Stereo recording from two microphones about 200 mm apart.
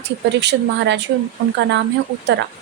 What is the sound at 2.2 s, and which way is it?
Speech, 60° right (ahead or behind).